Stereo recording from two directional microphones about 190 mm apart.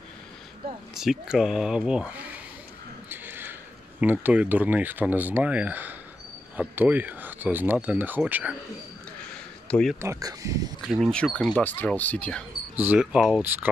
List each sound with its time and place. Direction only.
0.9 s speech: centre (ahead or behind)
3.1 s a sound: 10° right (ahead or behind)
4.0 s speech: 10° right (ahead or behind)
9.7 s speech: 5° left (ahead or behind)
9.9 s speech: 15° right (ahead or behind)
10.9 s speech: centre (ahead or behind)
12.7 s speech: 10° right (ahead or behind)